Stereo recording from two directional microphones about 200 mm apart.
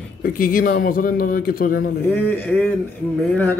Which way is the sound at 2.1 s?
10° left (ahead or behind).